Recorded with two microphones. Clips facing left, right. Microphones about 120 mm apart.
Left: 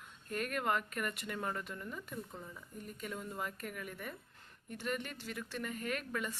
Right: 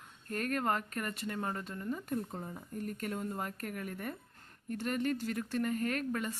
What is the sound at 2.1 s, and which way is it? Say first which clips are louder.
Speech: right 8 dB; 55° right (ahead or behind).